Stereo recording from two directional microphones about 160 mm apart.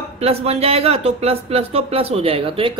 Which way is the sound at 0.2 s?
40° right (ahead or behind).